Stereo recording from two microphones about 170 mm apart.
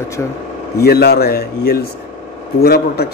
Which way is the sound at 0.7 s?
70° left (ahead or behind).